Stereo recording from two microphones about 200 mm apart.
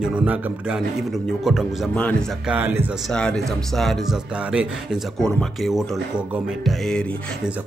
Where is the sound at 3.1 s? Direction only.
5° left (ahead or behind).